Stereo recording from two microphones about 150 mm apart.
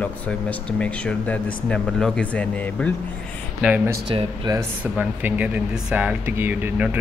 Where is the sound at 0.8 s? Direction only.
5° left (ahead or behind).